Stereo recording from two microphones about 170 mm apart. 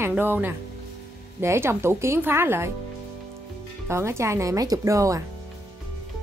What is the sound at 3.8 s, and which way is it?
Speech, 15° right (ahead or behind).